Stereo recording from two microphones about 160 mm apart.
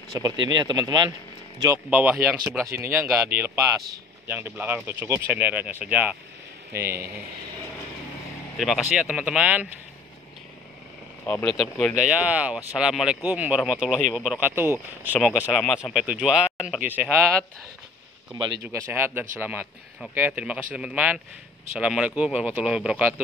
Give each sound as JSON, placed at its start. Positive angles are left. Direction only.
{"t": 0.1, "sound": "speech", "side_deg": -25}
{"t": 1.9, "sound": "speech", "side_deg": -10}
{"t": 8.5, "sound": "speech", "side_deg": 0}
{"t": 11.2, "sound": "speech", "side_deg": 10}
{"t": 12.2, "sound": "speech", "side_deg": -10}
{"t": 18.6, "sound": "speech", "side_deg": -15}